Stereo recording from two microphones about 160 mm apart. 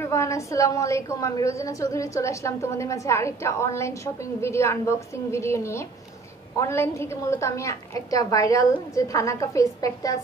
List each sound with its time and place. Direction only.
0.0 s a woman's voice: 20° left (ahead or behind)